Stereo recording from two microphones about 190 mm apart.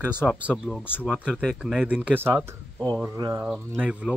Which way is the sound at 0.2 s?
5° right (ahead or behind).